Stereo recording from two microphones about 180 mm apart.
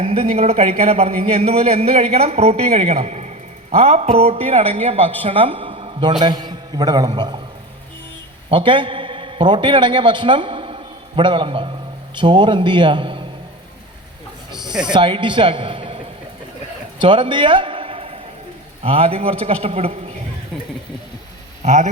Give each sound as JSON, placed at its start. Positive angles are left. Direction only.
{"t": 0.0, "sound": "a man's voice", "side_deg": -35}
{"t": 8.4, "sound": "a man's voice", "side_deg": -30}
{"t": 14.7, "sound": "speech", "side_deg": -5}
{"t": 14.9, "sound": "a man's voice", "side_deg": -25}
{"t": 17.0, "sound": "a man's voice", "side_deg": -30}
{"t": 21.6, "sound": "speech", "side_deg": -40}